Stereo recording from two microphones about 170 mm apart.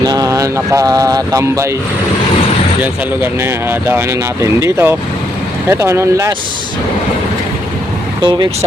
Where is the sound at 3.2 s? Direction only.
10° right (ahead or behind).